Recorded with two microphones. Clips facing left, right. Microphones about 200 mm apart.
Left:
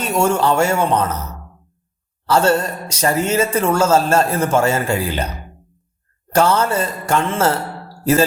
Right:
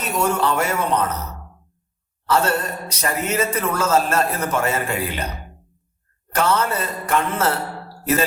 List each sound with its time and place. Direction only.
0.0 s speech: 30° left (ahead or behind)
2.2 s speech: 30° left (ahead or behind)
6.3 s speech: 30° left (ahead or behind)